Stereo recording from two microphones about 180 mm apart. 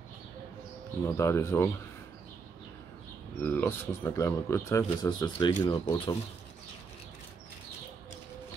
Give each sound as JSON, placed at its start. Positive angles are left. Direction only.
{"t": 1.0, "sound": "speech", "side_deg": 15}
{"t": 3.4, "sound": "speech", "side_deg": 10}